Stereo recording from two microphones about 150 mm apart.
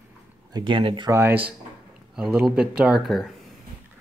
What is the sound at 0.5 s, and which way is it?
Speech, 35° right (ahead or behind).